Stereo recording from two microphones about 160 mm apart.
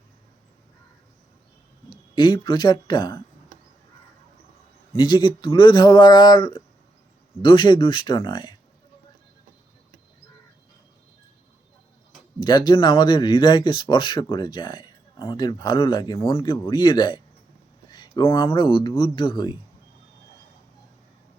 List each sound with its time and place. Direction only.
2.1 s speech: 30° left (ahead or behind)
4.9 s speech: 30° left (ahead or behind)
12.4 s speech: 25° left (ahead or behind)